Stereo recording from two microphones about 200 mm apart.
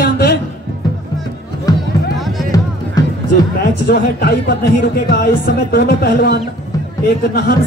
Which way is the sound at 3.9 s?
50° left (ahead or behind).